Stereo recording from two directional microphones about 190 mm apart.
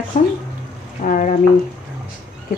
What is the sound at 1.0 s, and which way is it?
Speech, 45° left (ahead or behind).